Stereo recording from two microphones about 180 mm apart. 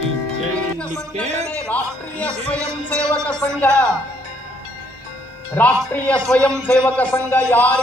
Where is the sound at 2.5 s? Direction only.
5° left (ahead or behind).